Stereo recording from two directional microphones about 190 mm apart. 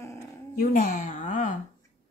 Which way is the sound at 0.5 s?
45° left (ahead or behind).